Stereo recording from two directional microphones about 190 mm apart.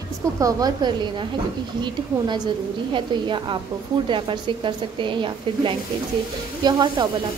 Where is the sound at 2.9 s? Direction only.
25° right (ahead or behind).